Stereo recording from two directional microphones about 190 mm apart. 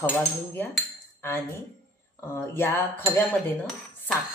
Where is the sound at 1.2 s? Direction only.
15° left (ahead or behind).